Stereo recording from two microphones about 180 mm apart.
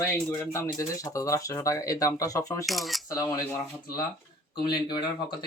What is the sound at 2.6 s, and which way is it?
Speech, centre (ahead or behind).